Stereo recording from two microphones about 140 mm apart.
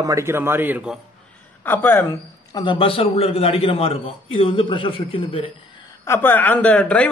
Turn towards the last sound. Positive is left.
turn(degrees=10)  # may be behind; listen again after turning